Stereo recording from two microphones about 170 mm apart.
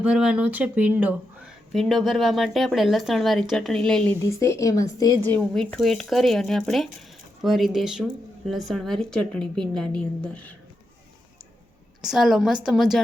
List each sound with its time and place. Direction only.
0.0 s speech: 5° right (ahead or behind)
4.2 s a woman's voice: 15° left (ahead or behind)
12.0 s speech: centre (ahead or behind)